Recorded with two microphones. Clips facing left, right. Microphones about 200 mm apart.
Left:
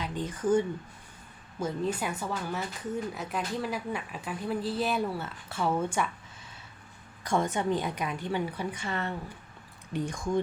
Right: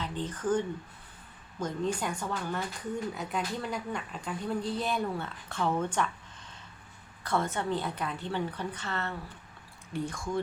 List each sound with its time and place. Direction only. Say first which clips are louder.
0.0 s speech: left 2 dB; 10° left (ahead or behind)